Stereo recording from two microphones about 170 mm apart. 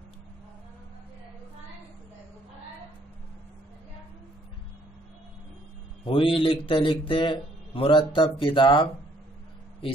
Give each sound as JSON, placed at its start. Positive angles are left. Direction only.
{"t": 6.0, "sound": "speech", "side_deg": 30}